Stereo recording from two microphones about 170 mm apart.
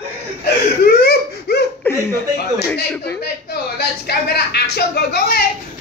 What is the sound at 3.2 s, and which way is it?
Speech, 70° left (ahead or behind).